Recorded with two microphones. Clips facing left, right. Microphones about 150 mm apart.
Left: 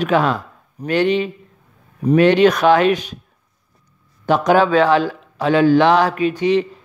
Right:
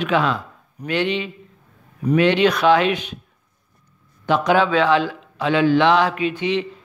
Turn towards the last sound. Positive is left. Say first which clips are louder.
# left 5 dB
turn(degrees=40)  # may be behind; listen again after turning